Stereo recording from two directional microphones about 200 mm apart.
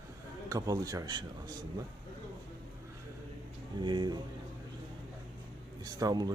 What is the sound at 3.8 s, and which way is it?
Speech, 20° right (ahead or behind).